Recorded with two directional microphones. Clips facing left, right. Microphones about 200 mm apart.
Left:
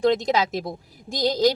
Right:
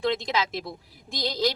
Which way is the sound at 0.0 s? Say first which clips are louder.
Left 6 dB; 45° left (ahead or behind).